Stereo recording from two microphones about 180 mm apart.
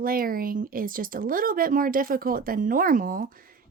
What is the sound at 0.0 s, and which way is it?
A woman's voice, 55° right (ahead or behind).